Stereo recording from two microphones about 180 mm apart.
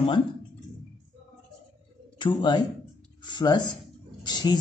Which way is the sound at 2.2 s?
25° left (ahead or behind).